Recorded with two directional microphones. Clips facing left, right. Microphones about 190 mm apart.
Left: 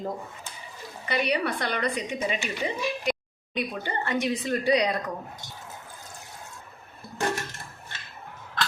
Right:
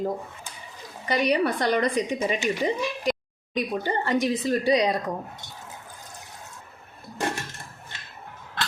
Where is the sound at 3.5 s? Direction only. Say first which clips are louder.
Right 4 dB; 35° right (ahead or behind).